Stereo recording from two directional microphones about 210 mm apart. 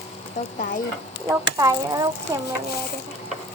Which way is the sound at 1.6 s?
15° right (ahead or behind).